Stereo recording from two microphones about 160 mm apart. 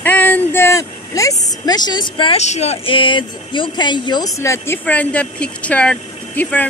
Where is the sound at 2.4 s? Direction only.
45° left (ahead or behind); by 6.6 s 10° left (ahead or behind).